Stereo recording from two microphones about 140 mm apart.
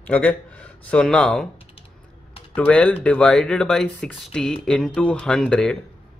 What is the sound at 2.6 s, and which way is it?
Speech, 10° left (ahead or behind).